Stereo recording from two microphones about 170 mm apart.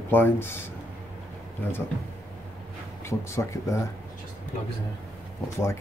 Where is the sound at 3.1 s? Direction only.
15° left (ahead or behind).